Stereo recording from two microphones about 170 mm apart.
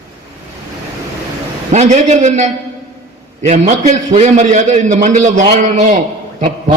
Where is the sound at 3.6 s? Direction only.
40° right (ahead or behind).